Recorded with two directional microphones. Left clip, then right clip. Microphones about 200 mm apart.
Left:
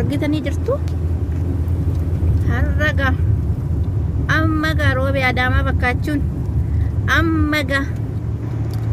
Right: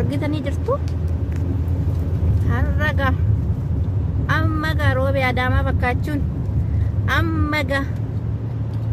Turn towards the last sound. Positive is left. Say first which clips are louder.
# left 3 dB
turn(degrees=20)  # may be behind; listen again after turning